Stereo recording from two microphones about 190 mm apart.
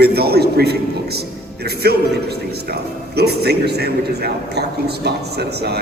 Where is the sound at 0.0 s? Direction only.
55° right (ahead or behind).